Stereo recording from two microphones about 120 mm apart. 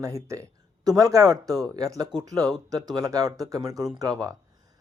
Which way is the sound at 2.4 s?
5° left (ahead or behind).